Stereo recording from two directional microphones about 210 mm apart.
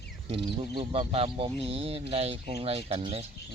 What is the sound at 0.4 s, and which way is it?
Speech, 25° right (ahead or behind).